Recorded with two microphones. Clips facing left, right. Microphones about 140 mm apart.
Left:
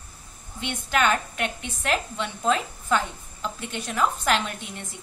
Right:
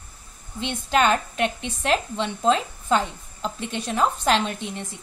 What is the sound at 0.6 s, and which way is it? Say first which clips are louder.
A woman's voice: right 3 dB; 25° right (ahead or behind).